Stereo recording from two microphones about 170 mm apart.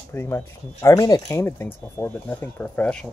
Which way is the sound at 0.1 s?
15° left (ahead or behind).